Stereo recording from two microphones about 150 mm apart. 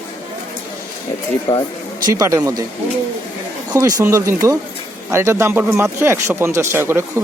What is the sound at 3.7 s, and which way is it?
Speech, 25° right (ahead or behind).